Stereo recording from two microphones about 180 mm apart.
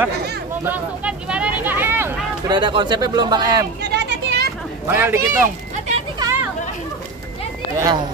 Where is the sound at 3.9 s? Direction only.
70° right (ahead or behind).